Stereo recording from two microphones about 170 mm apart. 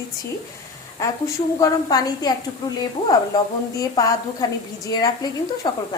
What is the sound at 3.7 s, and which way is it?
A woman's voice, 20° left (ahead or behind).